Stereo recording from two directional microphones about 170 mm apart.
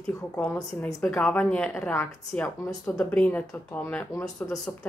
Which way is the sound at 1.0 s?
5° left (ahead or behind).